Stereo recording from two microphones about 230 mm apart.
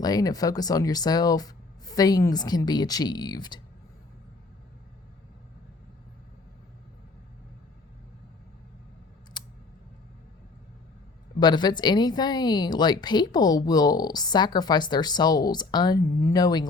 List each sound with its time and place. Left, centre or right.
0.0 s a woman's voice: centre
9.4 s scissors: centre
11.3 s a woman's voice: centre